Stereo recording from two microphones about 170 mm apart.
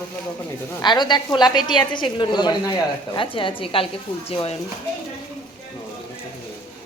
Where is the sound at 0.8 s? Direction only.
25° left (ahead or behind).